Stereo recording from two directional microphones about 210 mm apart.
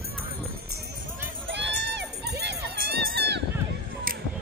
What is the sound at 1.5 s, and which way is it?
Crowd, 55° right (ahead or behind).